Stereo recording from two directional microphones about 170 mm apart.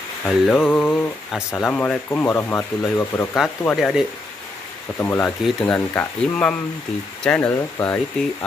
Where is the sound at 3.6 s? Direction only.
Centre (ahead or behind).